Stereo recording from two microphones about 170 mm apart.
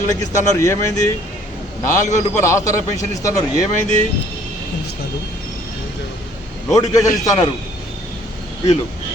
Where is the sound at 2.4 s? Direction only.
15° left (ahead or behind).